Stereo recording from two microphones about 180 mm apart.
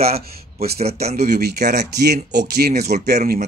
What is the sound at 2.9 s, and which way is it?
Speech, 50° right (ahead or behind).